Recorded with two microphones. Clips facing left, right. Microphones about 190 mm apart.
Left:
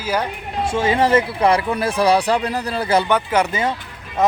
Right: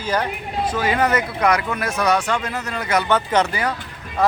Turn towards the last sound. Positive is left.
turn(degrees=20)  # may be behind; listen again after turning